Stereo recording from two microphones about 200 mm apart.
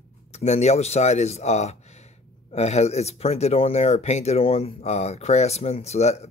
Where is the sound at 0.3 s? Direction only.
35° left (ahead or behind).